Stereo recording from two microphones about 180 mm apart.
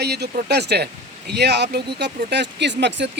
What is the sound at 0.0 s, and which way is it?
Speech, 65° right (ahead or behind).